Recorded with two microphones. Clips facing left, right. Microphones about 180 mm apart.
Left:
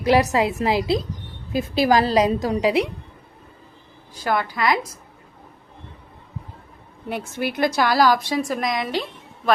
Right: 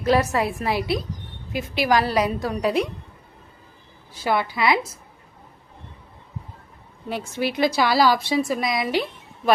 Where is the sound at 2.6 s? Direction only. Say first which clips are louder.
Left 1 dB; 75° left (ahead or behind).